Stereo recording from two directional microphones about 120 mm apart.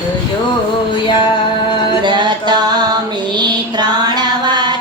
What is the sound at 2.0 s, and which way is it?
Music, 40° right (ahead or behind).